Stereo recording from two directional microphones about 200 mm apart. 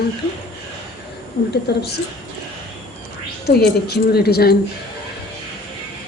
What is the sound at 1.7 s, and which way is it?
Speech, 55° left (ahead or behind).